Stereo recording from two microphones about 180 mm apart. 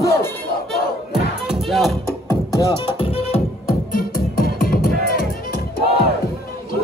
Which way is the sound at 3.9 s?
55° left (ahead or behind).